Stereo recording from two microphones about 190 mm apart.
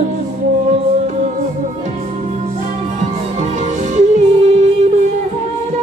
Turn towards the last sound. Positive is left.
turn(degrees=-35)  # may be behind; listen again after turning